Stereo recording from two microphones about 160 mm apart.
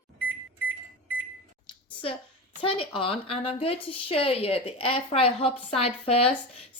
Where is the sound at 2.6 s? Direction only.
35° left (ahead or behind).